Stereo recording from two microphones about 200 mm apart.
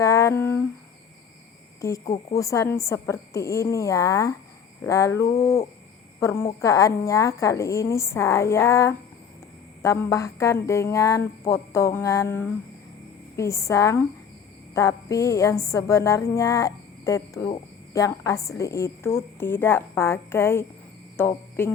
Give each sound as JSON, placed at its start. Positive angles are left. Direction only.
{"t": 0.0, "sound": "humming", "side_deg": 15}
{"t": 1.8, "sound": "a woman's voice", "side_deg": 15}